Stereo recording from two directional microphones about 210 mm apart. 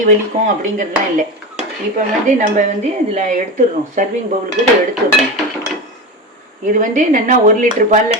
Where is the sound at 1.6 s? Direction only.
35° right (ahead or behind).